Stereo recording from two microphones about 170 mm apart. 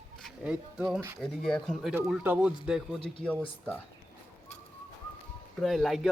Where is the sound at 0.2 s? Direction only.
Centre (ahead or behind).